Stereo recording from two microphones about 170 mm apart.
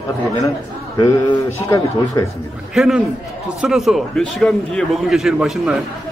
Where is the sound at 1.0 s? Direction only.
15° left (ahead or behind).